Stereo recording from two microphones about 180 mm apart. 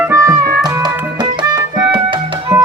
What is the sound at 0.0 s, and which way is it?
Music, 15° right (ahead or behind).